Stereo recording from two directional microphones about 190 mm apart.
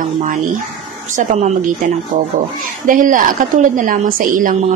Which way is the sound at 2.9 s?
45° right (ahead or behind).